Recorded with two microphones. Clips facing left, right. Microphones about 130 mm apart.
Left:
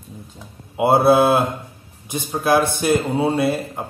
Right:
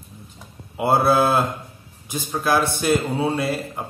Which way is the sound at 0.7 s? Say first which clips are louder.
Left 4 dB; 20° left (ahead or behind).